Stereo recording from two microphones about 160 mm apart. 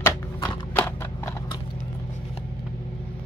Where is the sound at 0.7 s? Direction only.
15° left (ahead or behind).